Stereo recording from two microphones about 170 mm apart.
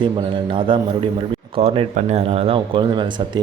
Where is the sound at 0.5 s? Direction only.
30° right (ahead or behind).